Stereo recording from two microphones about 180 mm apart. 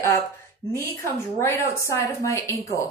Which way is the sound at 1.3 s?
15° left (ahead or behind).